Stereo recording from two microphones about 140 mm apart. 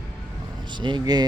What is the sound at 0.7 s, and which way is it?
Speech, 35° right (ahead or behind).